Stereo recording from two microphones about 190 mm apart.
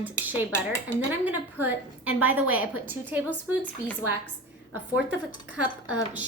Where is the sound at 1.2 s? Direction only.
10° right (ahead or behind).